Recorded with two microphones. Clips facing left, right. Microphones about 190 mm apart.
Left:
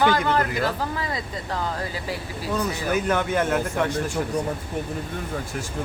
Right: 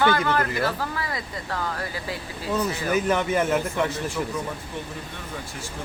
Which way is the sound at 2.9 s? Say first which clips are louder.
Even; 5° right (ahead or behind).